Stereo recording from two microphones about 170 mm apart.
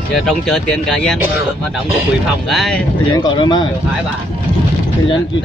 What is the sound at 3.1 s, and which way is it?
Speech, 25° left (ahead or behind).